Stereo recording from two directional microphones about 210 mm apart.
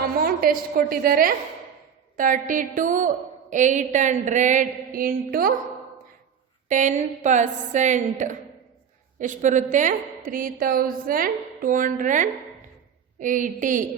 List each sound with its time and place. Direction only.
0.2 s a sound: 45° right (ahead or behind)
0.8 s a woman's voice: 45° right (ahead or behind)
6.7 s a woman's voice: 35° right (ahead or behind)